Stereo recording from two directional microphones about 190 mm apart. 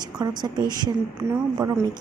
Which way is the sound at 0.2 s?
20° right (ahead or behind).